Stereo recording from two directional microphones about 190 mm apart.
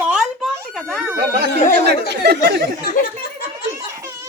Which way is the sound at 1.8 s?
60° right (ahead or behind).